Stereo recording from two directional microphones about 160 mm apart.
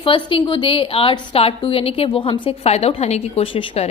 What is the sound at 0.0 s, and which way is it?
A woman's voice, 35° left (ahead or behind).